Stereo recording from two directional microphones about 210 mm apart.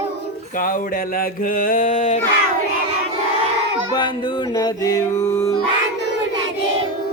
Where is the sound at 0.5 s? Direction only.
40° left (ahead or behind).